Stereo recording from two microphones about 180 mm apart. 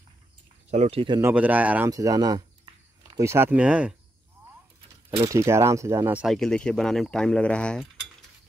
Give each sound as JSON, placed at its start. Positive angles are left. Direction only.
{"t": 0.7, "sound": "speech", "side_deg": -35}
{"t": 1.2, "sound": "speech", "side_deg": -10}
{"t": 1.9, "sound": "speech", "side_deg": -20}
{"t": 5.2, "sound": "speech", "side_deg": -15}
{"t": 6.2, "sound": "speech", "side_deg": 0}